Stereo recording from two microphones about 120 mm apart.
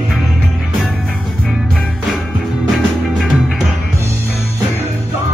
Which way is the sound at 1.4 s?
Centre (ahead or behind).